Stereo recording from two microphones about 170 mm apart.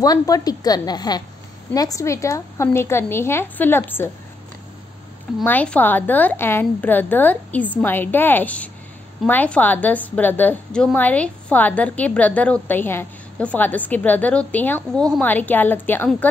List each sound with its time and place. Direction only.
0.0 s a woman's voice: 20° left (ahead or behind)
5.4 s a woman's voice: 10° left (ahead or behind)